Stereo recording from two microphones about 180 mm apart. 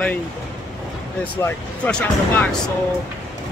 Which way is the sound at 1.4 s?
10° left (ahead or behind).